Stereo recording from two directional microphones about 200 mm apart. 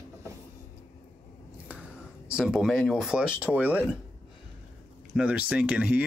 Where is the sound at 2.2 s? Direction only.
5° right (ahead or behind).